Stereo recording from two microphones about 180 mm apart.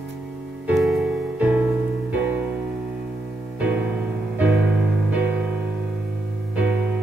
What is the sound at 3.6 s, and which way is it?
Music, 10° right (ahead or behind).